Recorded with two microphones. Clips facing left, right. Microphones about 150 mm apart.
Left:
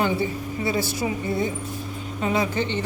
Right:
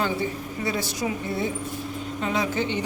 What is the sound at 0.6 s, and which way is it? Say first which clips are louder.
A woman's voice: left 2 dB; 5° left (ahead or behind).